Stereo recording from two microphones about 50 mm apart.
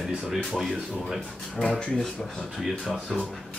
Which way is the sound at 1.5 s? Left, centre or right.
Centre.